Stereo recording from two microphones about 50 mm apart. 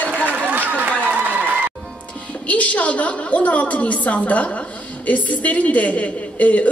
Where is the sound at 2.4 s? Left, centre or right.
Left.